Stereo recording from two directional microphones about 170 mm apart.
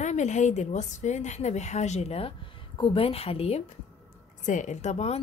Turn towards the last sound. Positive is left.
turn(degrees=40)  # may be behind; listen again after turning